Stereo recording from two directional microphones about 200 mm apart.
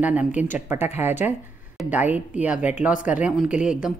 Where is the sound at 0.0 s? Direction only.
5° right (ahead or behind).